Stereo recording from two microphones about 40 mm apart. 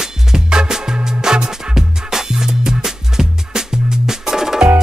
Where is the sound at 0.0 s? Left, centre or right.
Centre.